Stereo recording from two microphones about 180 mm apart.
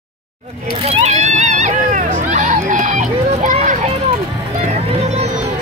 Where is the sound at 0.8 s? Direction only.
40° right (ahead or behind).